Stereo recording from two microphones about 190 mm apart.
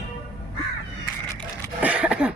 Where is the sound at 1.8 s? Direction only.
5° right (ahead or behind).